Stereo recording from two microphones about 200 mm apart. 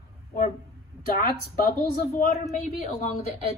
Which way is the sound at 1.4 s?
50° left (ahead or behind).